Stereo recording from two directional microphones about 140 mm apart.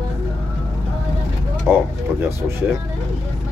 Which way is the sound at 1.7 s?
Centre (ahead or behind).